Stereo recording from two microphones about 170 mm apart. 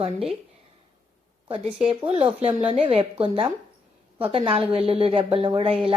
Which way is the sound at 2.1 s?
35° right (ahead or behind).